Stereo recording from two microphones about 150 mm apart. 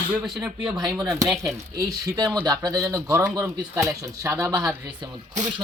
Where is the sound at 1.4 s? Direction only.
20° right (ahead or behind).